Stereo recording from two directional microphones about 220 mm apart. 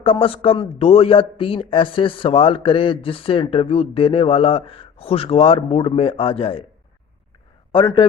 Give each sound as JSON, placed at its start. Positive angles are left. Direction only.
{"t": 0.0, "sound": "a man's voice", "side_deg": 25}
{"t": 7.7, "sound": "a man's voice", "side_deg": 20}